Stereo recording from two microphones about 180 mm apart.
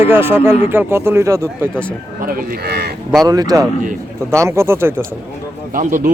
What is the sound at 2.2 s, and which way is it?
Speech, 50° right (ahead or behind).